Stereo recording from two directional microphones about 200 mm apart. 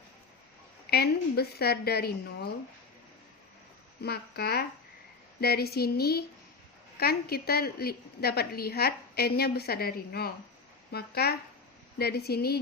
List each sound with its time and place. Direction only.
0.9 s a woman's voice: 55° left (ahead or behind)
4.0 s a woman's voice: 50° left (ahead or behind)